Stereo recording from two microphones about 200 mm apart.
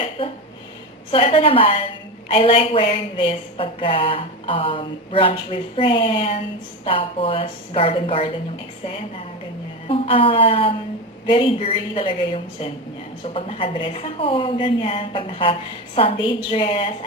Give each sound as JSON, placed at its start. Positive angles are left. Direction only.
{"t": 0.2, "sound": "speech", "side_deg": 25}
{"t": 9.8, "sound": "speech", "side_deg": 25}